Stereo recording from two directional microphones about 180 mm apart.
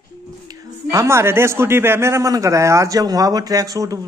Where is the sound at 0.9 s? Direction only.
15° right (ahead or behind).